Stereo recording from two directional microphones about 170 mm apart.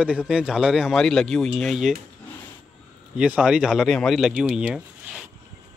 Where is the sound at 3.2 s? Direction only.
5° right (ahead or behind).